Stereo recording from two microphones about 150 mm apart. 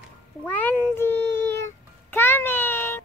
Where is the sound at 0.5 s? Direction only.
10° left (ahead or behind).